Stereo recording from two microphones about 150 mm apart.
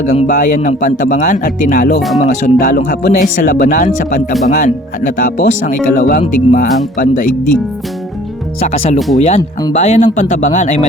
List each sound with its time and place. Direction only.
0.1 s speech: 55° left (ahead or behind)
2.0 s speech: centre (ahead or behind)
2.3 s speech: 65° left (ahead or behind)
8.6 s speech: 45° left (ahead or behind)
9.0 s speech: centre (ahead or behind)
9.7 s speech: 50° left (ahead or behind)